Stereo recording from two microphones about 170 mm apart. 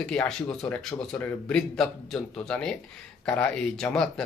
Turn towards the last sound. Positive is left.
turn(degrees=5)  # may be behind; listen again after turning